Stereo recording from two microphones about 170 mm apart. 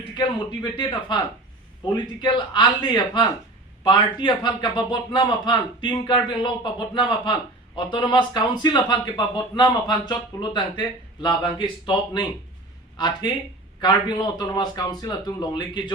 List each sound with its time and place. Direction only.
0.1 s a man's voice: 25° left (ahead or behind)
13.0 s a man's voice: 25° left (ahead or behind)